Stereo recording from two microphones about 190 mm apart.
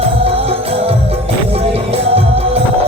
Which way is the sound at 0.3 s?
30° right (ahead or behind).